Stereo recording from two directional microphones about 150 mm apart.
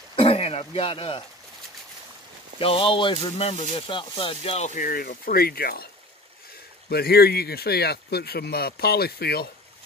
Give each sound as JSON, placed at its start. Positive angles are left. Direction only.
{"t": 0.1, "sound": "speech", "side_deg": 40}
{"t": 2.6, "sound": "speech", "side_deg": 35}
{"t": 3.8, "sound": "speech", "side_deg": 35}
{"t": 6.9, "sound": "speech", "side_deg": 90}